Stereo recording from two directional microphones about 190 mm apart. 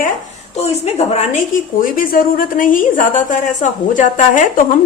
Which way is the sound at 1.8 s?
45° left (ahead or behind).